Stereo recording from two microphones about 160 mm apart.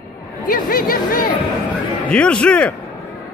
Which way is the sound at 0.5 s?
65° left (ahead or behind).